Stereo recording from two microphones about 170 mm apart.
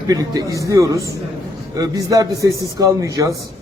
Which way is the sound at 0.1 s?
20° right (ahead or behind).